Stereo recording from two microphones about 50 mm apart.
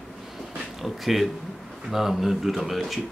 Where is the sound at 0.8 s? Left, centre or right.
Centre.